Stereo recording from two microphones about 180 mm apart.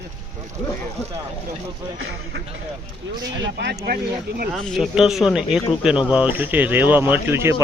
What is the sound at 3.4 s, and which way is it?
Speech, 70° right (ahead or behind).